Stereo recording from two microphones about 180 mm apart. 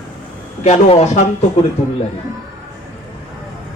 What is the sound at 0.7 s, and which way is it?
Speech, 40° left (ahead or behind).